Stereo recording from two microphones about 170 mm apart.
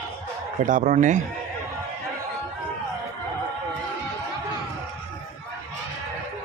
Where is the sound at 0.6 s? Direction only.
50° right (ahead or behind).